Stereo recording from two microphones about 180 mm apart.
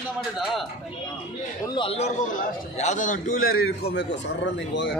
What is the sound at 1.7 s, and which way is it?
A man's voice, 30° left (ahead or behind).